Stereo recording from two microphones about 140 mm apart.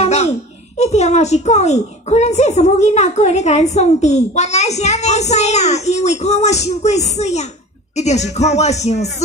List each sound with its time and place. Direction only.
0.0 s a child's voice: 50° left (ahead or behind)